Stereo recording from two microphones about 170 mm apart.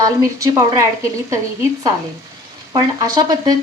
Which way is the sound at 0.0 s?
20° right (ahead or behind).